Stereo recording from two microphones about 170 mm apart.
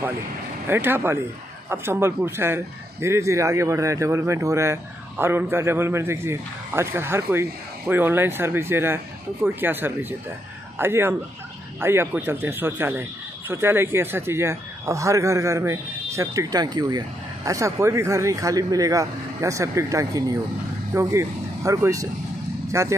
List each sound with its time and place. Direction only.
0.7 s speech: 15° right (ahead or behind)